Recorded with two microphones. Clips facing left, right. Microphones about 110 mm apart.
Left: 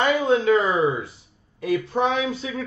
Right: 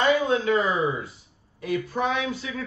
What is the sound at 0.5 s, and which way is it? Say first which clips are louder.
Speech: left 4 dB; 25° left (ahead or behind).